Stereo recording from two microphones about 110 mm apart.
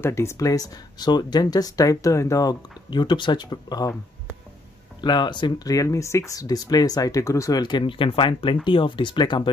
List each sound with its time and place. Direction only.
0.0 s speech: 25° left (ahead or behind)
2.9 s speech: 45° left (ahead or behind)
5.0 s speech: 45° left (ahead or behind)